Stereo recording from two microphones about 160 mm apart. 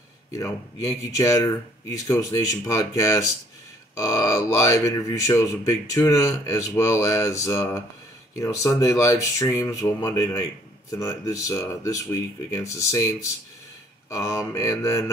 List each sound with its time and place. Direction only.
0.3 s speech: 20° left (ahead or behind)